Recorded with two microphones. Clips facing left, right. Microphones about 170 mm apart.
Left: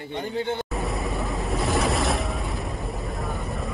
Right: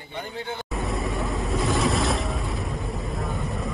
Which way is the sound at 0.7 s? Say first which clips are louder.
Even; centre (ahead or behind).